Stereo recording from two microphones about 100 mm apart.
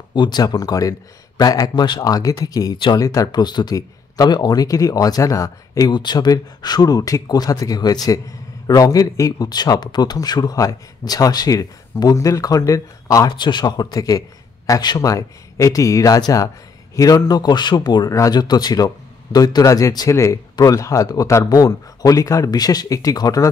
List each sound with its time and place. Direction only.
0.1 s speech: 45° left (ahead or behind)
5.9 s speech: 50° left (ahead or behind)
13.3 s speech: 50° left (ahead or behind)